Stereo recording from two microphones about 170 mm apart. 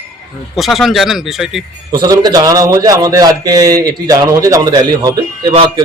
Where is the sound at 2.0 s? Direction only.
25° right (ahead or behind).